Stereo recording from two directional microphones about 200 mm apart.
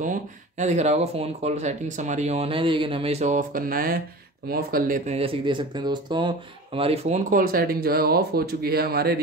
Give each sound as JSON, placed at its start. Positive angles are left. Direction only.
{"t": 0.0, "sound": "speech", "side_deg": -40}